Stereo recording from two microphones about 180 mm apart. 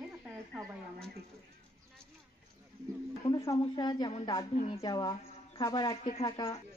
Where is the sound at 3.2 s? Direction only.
20° left (ahead or behind).